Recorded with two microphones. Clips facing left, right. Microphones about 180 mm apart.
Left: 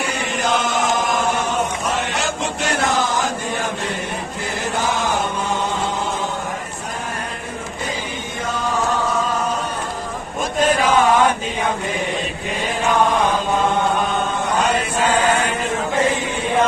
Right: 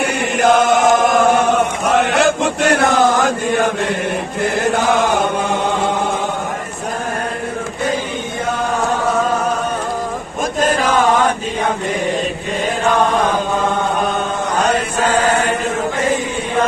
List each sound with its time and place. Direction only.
0.0 s chant: 60° right (ahead or behind)
4.8 s chant: 60° right (ahead or behind)